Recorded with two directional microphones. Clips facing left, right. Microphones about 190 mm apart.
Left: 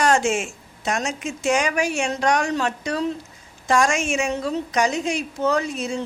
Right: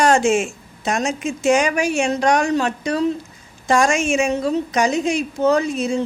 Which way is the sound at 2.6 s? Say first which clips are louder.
Right 3 dB; 15° right (ahead or behind).